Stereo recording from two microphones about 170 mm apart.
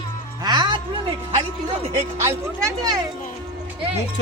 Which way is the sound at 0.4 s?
25° right (ahead or behind).